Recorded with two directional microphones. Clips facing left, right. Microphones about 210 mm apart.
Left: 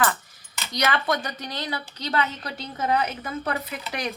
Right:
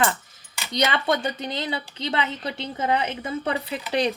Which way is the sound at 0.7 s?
25° right (ahead or behind).